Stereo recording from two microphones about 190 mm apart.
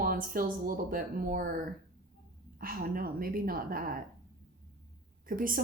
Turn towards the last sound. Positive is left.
turn(degrees=-45)  # may be behind; listen again after turning